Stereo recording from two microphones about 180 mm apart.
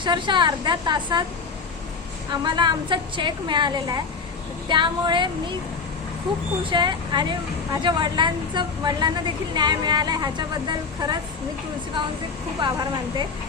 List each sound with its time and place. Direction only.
0.0 s a woman's voice: 25° right (ahead or behind)
2.4 s a woman's voice: 25° right (ahead or behind)
6.7 s a woman's voice: 25° right (ahead or behind)